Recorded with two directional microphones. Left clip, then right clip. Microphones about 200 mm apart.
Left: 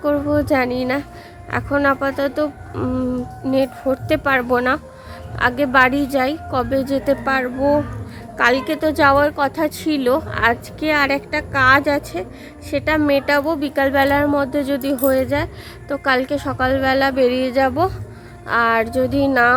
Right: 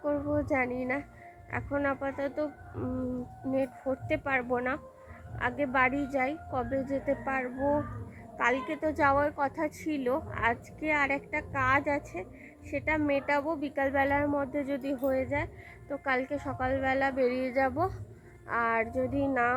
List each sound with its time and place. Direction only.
0.3 s a woman's voice: 5° left (ahead or behind)